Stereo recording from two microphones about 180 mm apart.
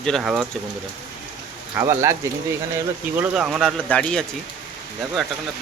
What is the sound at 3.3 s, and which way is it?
Speech, centre (ahead or behind).